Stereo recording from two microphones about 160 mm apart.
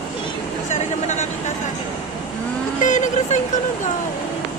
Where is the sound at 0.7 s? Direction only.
50° left (ahead or behind).